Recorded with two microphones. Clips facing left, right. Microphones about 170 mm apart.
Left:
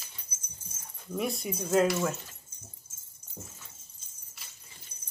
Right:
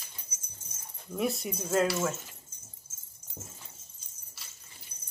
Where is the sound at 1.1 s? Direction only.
Centre (ahead or behind).